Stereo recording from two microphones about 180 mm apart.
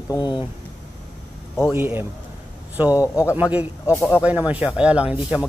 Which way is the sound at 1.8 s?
10° right (ahead or behind).